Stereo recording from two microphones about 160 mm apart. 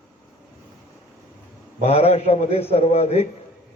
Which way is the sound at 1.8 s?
40° left (ahead or behind).